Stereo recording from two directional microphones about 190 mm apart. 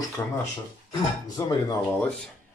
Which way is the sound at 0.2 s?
15° left (ahead or behind).